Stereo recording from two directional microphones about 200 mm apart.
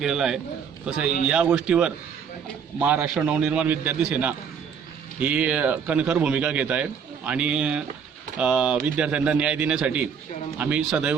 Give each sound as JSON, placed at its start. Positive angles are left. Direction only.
{"t": 0.0, "sound": "a man's voice", "side_deg": -5}